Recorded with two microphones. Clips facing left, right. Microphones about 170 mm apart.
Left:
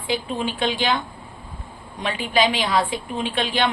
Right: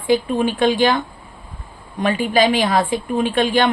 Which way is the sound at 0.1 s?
50° right (ahead or behind).